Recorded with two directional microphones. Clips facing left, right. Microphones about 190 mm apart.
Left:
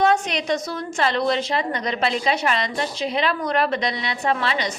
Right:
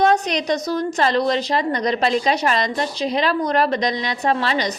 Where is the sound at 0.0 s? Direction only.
40° right (ahead or behind).